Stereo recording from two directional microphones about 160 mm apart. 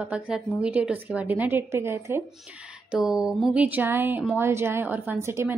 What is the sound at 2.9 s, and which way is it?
A woman's voice, 5° right (ahead or behind).